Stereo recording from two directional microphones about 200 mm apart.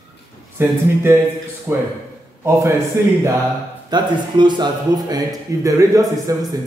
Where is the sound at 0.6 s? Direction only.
10° right (ahead or behind).